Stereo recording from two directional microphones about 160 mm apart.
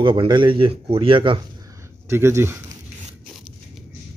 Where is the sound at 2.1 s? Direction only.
15° right (ahead or behind).